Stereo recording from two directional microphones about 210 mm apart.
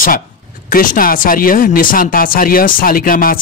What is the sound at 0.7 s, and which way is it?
Speech, 40° left (ahead or behind).